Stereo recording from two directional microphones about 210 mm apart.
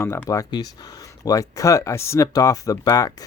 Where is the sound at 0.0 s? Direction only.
10° left (ahead or behind).